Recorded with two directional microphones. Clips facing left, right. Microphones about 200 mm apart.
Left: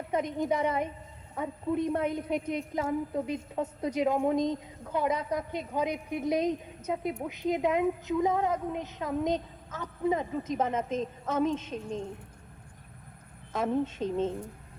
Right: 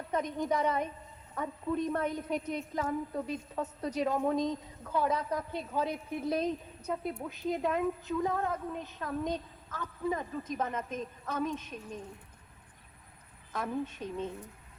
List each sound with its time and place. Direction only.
0.1 s a woman's voice: 15° left (ahead or behind)
13.5 s a woman's voice: 25° left (ahead or behind)